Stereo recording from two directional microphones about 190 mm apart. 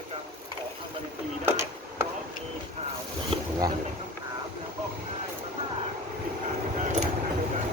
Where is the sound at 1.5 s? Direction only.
15° right (ahead or behind).